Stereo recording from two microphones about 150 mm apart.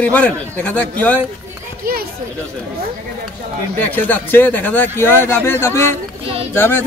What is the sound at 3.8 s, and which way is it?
Speech, 10° left (ahead or behind).